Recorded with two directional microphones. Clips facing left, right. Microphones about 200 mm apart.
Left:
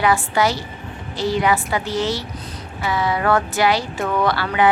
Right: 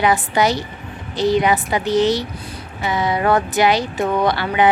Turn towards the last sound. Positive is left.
turn(degrees=-20)  # may be behind; listen again after turning